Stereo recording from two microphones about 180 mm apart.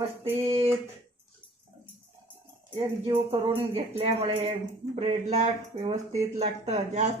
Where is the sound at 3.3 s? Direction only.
30° right (ahead or behind).